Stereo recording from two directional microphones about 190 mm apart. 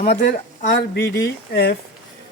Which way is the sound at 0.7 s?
65° left (ahead or behind).